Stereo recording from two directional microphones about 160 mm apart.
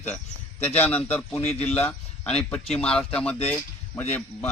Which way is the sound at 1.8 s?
10° left (ahead or behind).